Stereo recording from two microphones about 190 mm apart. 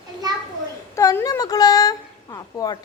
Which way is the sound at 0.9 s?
15° left (ahead or behind).